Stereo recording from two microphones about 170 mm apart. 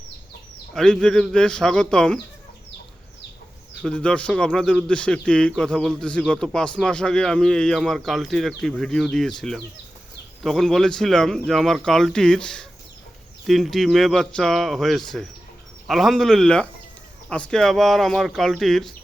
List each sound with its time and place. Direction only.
0.7 s speech: centre (ahead or behind)
3.8 s speech: 5° left (ahead or behind)